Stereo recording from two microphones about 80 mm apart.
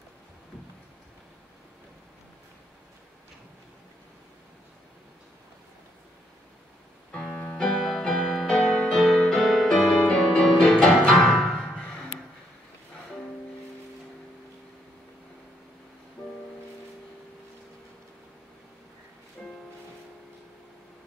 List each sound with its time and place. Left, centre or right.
7.3 s music: centre
19.4 s music: centre